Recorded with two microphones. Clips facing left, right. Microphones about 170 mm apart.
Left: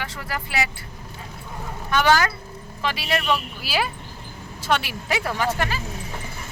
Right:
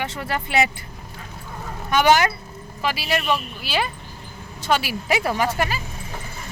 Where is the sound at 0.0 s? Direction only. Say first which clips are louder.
Right 4 dB; 25° right (ahead or behind).